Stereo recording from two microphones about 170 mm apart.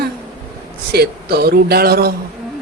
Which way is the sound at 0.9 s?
65° right (ahead or behind).